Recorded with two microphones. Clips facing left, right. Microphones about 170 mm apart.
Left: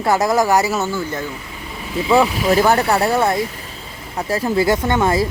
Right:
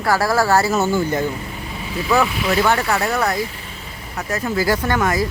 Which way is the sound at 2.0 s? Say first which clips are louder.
Left 4 dB; 30° left (ahead or behind).